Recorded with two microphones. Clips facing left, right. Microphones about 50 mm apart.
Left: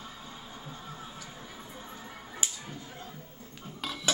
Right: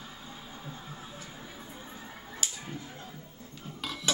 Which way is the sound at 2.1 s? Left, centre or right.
Centre.